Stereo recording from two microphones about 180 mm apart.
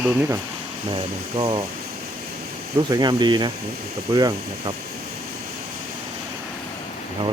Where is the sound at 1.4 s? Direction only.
25° right (ahead or behind).